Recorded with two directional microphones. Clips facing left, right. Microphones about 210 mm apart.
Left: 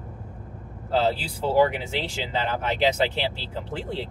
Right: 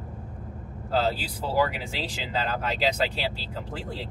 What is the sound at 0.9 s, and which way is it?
Speech, 30° left (ahead or behind).